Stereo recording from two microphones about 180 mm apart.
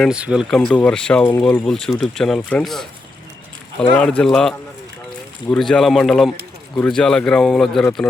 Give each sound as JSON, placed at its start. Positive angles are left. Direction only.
{"t": 0.0, "sound": "speech", "side_deg": -5}
{"t": 3.9, "sound": "speech", "side_deg": 5}